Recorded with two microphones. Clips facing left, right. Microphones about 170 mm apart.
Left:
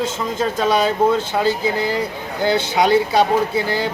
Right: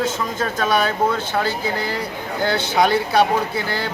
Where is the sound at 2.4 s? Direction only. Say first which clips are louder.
Left 2 dB; 20° left (ahead or behind).